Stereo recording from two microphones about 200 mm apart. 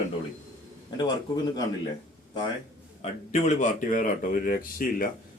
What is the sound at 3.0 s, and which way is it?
A man's voice, 35° left (ahead or behind).